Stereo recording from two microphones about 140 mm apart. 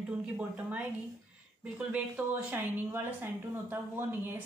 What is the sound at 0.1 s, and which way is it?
A woman's voice, 10° right (ahead or behind).